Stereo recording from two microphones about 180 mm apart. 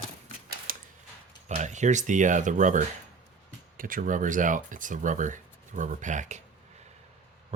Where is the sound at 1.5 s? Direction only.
40° right (ahead or behind).